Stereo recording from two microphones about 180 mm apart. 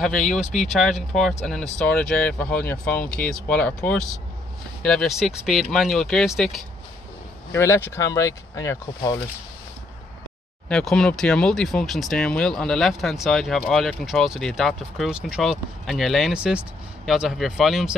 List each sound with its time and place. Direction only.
0.4 s speech: centre (ahead or behind)
7.5 s speech: 15° left (ahead or behind)
10.7 s speech: 5° left (ahead or behind)